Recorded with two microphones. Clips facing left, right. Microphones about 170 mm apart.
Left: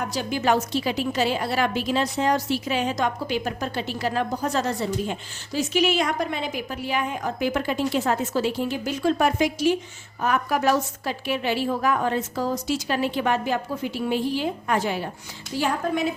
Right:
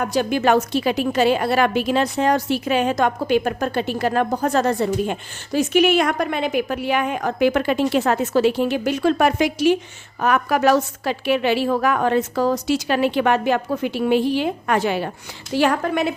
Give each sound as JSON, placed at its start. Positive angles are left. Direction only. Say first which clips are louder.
{"t": 0.0, "sound": "a woman's voice", "louder": "right 6 dB", "side_deg": -60}